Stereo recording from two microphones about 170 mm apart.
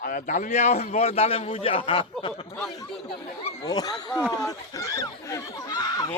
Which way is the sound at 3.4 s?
35° left (ahead or behind).